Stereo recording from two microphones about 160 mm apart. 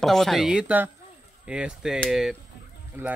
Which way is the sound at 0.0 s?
Centre (ahead or behind).